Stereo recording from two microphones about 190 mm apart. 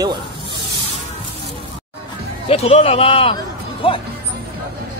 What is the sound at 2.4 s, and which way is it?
Speech, 30° left (ahead or behind).